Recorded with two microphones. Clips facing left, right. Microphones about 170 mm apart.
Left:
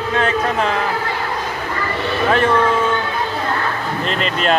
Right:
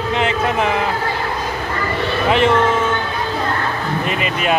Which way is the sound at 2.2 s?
20° right (ahead or behind).